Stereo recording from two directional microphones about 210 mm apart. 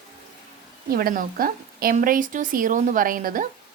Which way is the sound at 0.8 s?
45° right (ahead or behind).